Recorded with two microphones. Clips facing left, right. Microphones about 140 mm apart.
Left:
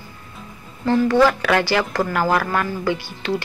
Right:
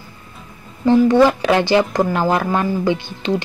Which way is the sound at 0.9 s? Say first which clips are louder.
Right 4 dB; 15° right (ahead or behind).